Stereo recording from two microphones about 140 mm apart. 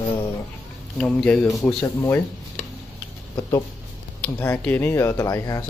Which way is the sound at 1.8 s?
15° left (ahead or behind).